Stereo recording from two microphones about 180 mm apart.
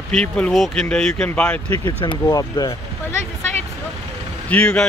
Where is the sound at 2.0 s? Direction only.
25° left (ahead or behind).